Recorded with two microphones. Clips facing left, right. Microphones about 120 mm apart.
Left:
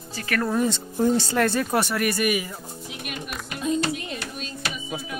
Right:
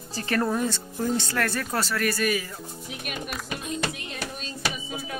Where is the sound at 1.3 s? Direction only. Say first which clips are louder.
Left 5 dB; 25° left (ahead or behind).